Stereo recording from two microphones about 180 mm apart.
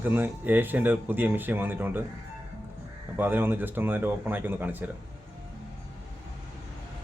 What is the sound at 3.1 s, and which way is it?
Speech, 10° right (ahead or behind).